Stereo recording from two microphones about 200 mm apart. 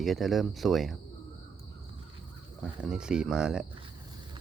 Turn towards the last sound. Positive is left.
turn(degrees=-5)  # may be behind; listen again after turning